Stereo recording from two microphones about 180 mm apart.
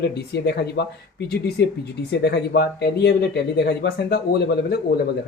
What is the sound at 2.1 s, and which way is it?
Speech, 65° left (ahead or behind).